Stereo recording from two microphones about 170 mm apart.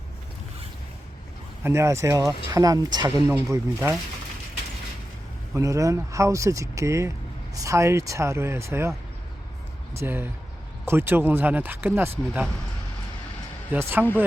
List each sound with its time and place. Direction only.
1.6 s speech: 15° right (ahead or behind)
5.5 s speech: 20° right (ahead or behind)
10.0 s speech: 10° right (ahead or behind)
13.7 s speech: 10° right (ahead or behind)